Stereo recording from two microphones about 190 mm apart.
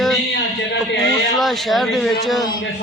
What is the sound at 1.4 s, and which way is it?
Speech, centre (ahead or behind).